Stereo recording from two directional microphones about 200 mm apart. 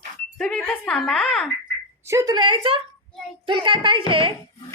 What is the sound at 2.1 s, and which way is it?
Speech, 15° right (ahead or behind).